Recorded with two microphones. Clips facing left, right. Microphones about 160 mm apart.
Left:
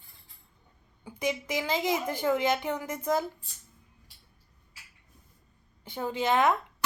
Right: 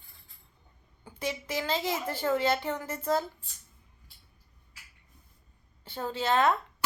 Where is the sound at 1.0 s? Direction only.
15° left (ahead or behind).